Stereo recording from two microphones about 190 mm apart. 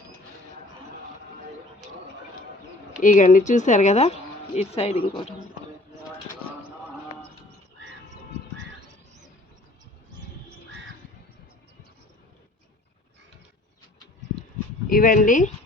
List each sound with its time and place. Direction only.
3.0 s speech: 40° left (ahead or behind)
14.8 s speech: 50° left (ahead or behind)